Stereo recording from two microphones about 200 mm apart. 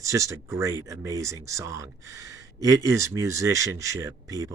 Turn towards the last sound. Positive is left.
turn(degrees=-15)  # may be behind; listen again after turning